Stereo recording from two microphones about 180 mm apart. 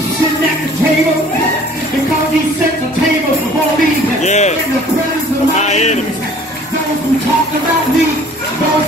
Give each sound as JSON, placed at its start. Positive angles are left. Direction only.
{"t": 4.2, "sound": "music", "side_deg": 40}
{"t": 5.6, "sound": "music", "side_deg": 40}